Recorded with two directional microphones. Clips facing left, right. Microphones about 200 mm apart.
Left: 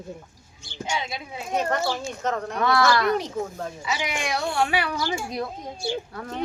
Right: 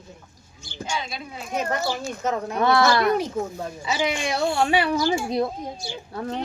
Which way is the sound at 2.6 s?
25° right (ahead or behind).